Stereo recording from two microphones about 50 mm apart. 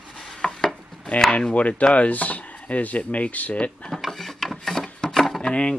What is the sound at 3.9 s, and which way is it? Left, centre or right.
Wood, centre.